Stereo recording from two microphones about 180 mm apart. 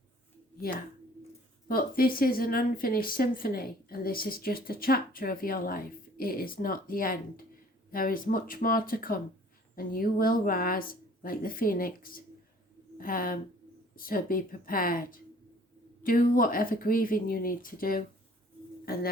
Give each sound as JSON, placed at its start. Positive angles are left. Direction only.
{"t": 1.6, "sound": "speech", "side_deg": 55}